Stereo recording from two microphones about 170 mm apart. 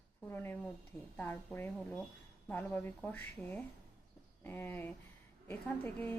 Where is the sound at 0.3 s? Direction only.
10° left (ahead or behind).